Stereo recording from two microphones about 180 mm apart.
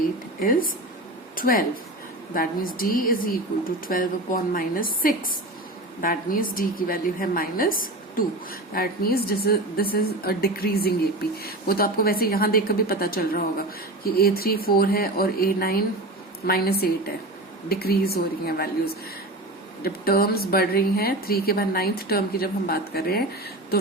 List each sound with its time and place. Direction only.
1.4 s a woman's voice: 50° left (ahead or behind)
6.0 s a woman's voice: 50° left (ahead or behind)
19.8 s a woman's voice: 55° left (ahead or behind)